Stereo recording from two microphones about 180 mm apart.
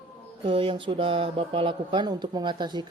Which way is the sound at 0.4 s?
30° right (ahead or behind).